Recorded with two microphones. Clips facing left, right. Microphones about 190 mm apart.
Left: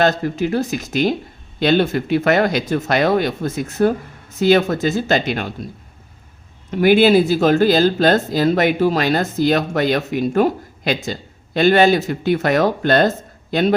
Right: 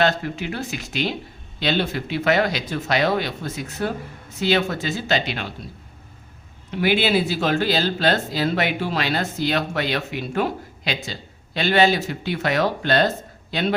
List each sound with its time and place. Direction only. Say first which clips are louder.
0.0 s speech: left 5 dB; 45° left (ahead or behind)
6.7 s speech: left 8 dB; 45° left (ahead or behind)